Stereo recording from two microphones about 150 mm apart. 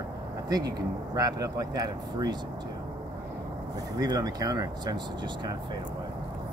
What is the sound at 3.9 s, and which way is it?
Speech, 25° right (ahead or behind).